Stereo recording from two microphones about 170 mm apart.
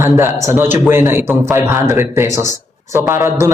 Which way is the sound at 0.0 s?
15° right (ahead or behind).